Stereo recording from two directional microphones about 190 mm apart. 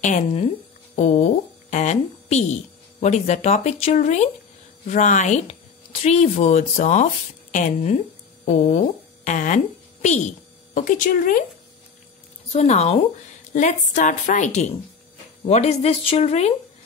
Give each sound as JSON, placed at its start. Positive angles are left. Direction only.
{"t": 0.0, "sound": "speech", "side_deg": 40}
{"t": 10.7, "sound": "speech", "side_deg": 45}
{"t": 12.5, "sound": "speech", "side_deg": 35}